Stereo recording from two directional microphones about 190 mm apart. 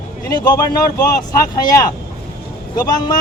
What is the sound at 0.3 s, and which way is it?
A man's voice, 20° left (ahead or behind).